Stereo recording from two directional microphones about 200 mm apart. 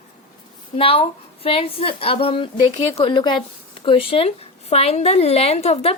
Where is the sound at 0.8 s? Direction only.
30° left (ahead or behind).